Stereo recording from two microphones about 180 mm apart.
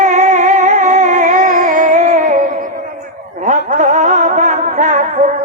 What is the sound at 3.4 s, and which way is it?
Music, 40° right (ahead or behind).